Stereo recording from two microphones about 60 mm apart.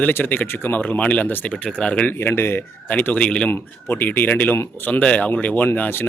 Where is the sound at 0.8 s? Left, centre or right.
Left.